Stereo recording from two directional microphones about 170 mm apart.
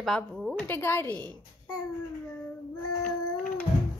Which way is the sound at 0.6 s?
10° left (ahead or behind).